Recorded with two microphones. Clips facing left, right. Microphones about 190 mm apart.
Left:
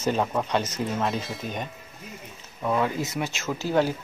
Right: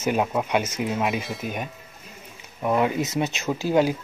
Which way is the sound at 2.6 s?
15° right (ahead or behind).